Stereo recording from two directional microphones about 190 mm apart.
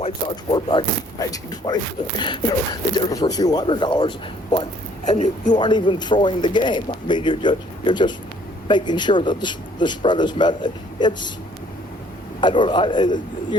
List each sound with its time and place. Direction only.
0.0 s speech: 25° left (ahead or behind)
5.0 s a woman's voice: 40° left (ahead or behind)
5.5 s speech: 25° left (ahead or behind)
12.4 s speech: 25° left (ahead or behind)